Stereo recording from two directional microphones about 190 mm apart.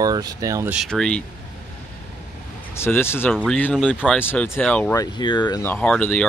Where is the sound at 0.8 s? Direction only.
5° left (ahead or behind).